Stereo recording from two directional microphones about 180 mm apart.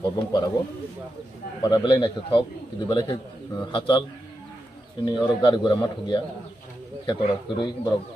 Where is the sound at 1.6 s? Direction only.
25° left (ahead or behind).